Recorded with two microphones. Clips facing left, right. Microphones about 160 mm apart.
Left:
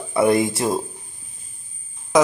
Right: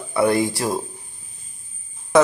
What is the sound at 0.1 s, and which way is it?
Speech, 20° left (ahead or behind).